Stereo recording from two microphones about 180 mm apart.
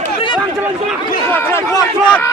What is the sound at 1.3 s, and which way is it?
Speech, 10° left (ahead or behind).